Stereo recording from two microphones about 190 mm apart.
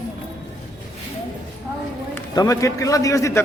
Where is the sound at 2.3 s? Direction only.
20° left (ahead or behind).